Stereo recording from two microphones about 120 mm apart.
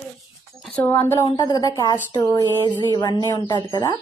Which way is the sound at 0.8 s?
15° left (ahead or behind).